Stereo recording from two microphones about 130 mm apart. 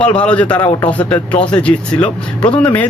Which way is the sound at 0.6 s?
30° left (ahead or behind).